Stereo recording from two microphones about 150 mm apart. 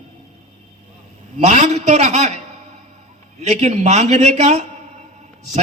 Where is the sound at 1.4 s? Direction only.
50° right (ahead or behind).